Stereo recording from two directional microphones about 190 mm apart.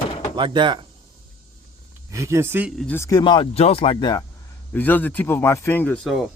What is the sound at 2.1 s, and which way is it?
Speech, 15° right (ahead or behind).